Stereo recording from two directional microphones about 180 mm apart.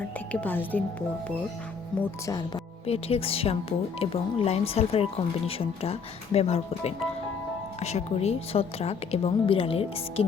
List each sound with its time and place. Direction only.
0.3 s a woman's voice: 10° left (ahead or behind)
2.8 s speech: 35° left (ahead or behind)